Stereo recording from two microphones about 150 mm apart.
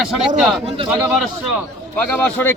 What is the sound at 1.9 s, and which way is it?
Speech, 10° left (ahead or behind).